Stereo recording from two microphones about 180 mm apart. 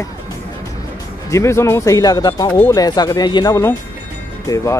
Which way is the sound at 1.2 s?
15° left (ahead or behind).